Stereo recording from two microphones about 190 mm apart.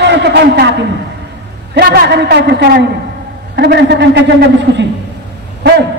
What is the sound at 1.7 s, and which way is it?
A man's voice, 55° right (ahead or behind).